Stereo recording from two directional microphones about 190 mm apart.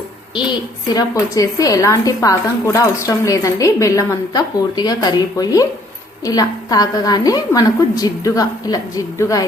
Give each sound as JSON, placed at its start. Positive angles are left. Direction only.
{"t": 0.9, "sound": "a woman's voice", "side_deg": 20}